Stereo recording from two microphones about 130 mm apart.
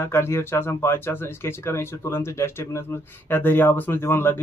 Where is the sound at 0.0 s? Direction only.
20° left (ahead or behind).